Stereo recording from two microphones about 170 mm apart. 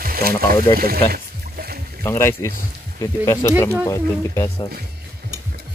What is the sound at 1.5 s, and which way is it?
Boat, 65° right (ahead or behind).